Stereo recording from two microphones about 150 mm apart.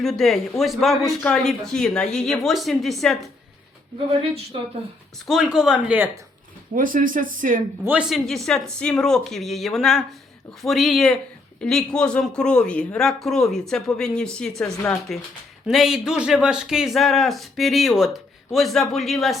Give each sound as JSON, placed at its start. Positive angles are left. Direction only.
{"t": 0.0, "sound": "speech", "side_deg": 0}
{"t": 5.2, "sound": "speech", "side_deg": 0}
{"t": 6.7, "sound": "speech", "side_deg": -65}
{"t": 7.9, "sound": "speech", "side_deg": -5}